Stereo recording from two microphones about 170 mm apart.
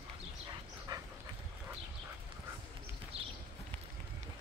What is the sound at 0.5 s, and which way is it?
Dog, 20° right (ahead or behind).